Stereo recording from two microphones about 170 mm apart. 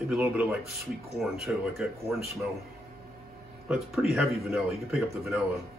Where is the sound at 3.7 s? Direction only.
Centre (ahead or behind).